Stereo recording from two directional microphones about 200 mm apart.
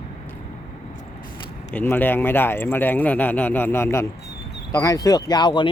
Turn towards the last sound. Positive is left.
turn(degrees=20)  # may be behind; listen again after turning